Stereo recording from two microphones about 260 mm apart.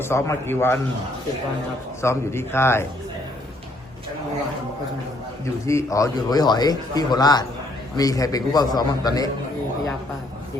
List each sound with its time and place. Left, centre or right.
0.0 s a man's voice: centre
2.0 s a man's voice: centre
5.6 s a man's voice: centre